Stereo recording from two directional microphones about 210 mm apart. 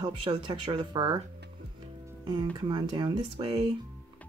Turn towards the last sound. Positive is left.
turn(degrees=-25)  # may be behind; listen again after turning